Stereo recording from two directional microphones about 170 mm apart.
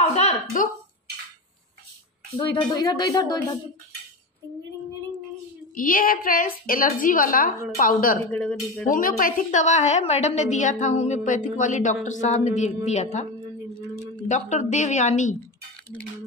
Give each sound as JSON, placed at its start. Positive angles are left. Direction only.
{"t": 0.0, "sound": "a sound", "side_deg": 40}
{"t": 2.5, "sound": "speech", "side_deg": 20}
{"t": 5.8, "sound": "a woman's voice", "side_deg": 55}
{"t": 8.3, "sound": "speech", "side_deg": 5}
{"t": 8.9, "sound": "a woman's voice", "side_deg": 55}